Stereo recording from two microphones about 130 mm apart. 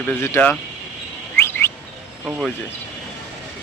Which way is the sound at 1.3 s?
20° left (ahead or behind).